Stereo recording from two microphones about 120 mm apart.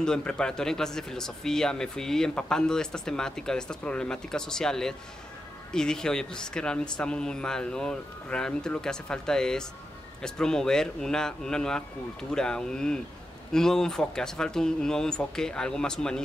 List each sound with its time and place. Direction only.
0.0 s speech: 5° left (ahead or behind)